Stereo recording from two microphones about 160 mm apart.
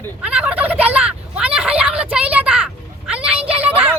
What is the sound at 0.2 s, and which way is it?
Gobble, 5° right (ahead or behind).